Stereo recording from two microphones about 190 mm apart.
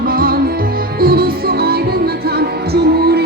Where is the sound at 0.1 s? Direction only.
50° right (ahead or behind).